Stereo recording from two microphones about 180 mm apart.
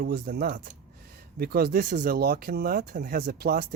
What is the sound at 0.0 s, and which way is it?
Speech, 60° right (ahead or behind).